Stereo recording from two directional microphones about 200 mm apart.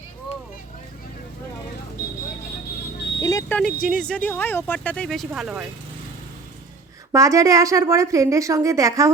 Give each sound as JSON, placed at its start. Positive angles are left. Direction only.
{"t": 3.2, "sound": "vehicle", "side_deg": 15}
{"t": 3.8, "sound": "speech", "side_deg": 5}
{"t": 7.1, "sound": "a woman's voice", "side_deg": -15}